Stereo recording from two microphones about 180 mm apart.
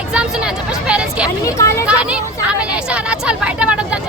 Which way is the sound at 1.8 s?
5° right (ahead or behind).